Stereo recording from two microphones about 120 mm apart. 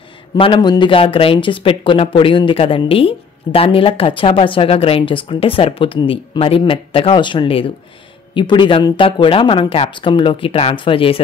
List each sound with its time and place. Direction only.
0.4 s speech: 40° left (ahead or behind)